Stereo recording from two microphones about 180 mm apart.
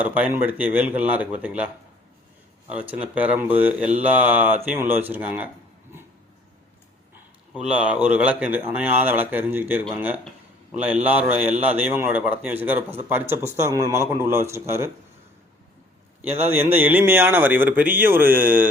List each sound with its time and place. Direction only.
0.0 s speech: 10° right (ahead or behind)
7.5 s speech: 5° right (ahead or behind)
11.0 s speech: 10° right (ahead or behind)
16.5 s speech: 10° right (ahead or behind)